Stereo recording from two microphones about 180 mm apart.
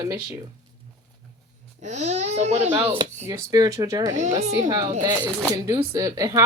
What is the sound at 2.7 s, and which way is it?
Speech, 10° right (ahead or behind).